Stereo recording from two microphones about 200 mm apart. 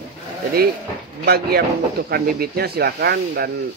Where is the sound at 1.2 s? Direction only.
50° right (ahead or behind).